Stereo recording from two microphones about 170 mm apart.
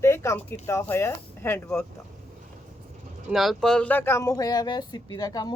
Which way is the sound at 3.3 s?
Centre (ahead or behind).